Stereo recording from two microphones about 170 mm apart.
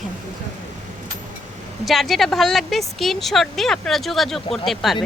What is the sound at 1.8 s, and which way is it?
Speech, centre (ahead or behind).